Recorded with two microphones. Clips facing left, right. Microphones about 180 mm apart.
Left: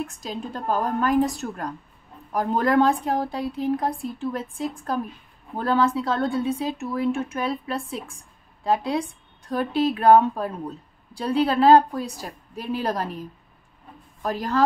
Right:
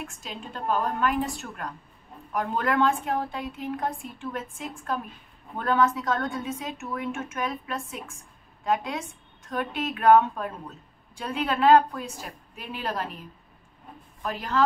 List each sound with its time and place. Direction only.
0.0 s a woman's voice: 35° left (ahead or behind)
14.2 s a woman's voice: 40° left (ahead or behind)